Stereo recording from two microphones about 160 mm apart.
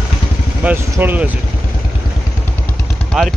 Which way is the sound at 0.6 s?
15° right (ahead or behind).